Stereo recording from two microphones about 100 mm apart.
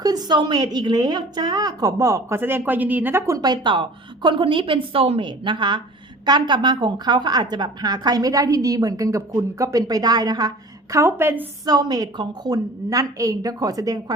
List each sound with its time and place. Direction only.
0.0 s a woman's voice: 40° right (ahead or behind)
2.4 s speech: 20° right (ahead or behind)
3.3 s a woman's voice: 45° right (ahead or behind)
10.9 s speech: 25° right (ahead or behind)
11.6 s a woman's voice: 40° right (ahead or behind)